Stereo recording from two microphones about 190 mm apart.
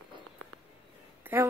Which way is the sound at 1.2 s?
10° right (ahead or behind).